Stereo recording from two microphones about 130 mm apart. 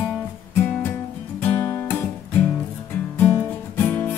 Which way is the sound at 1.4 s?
10° left (ahead or behind).